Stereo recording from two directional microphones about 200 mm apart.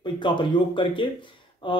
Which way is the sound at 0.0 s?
25° left (ahead or behind).